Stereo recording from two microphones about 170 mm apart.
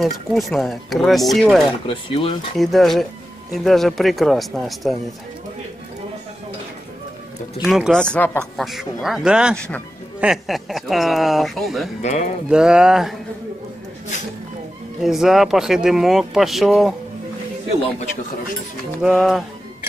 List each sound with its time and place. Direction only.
0.0 s speech: centre (ahead or behind)
1.9 s speech: 30° left (ahead or behind)
2.5 s speech: centre (ahead or behind)
7.6 s speech: centre (ahead or behind)
9.6 s speech: 10° left (ahead or behind)
10.2 s speech: centre (ahead or behind)
12.0 s speech: 40° left (ahead or behind)
12.4 s speech: 5° right (ahead or behind)
15.0 s speech: centre (ahead or behind)
18.9 s speech: centre (ahead or behind)